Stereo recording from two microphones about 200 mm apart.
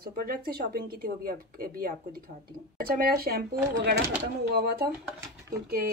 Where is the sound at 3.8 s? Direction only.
60° right (ahead or behind).